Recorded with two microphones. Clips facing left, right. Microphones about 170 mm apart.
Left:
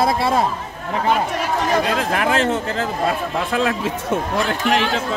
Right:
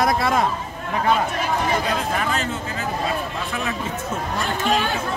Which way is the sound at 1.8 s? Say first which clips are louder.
Left 4 dB; 70° left (ahead or behind).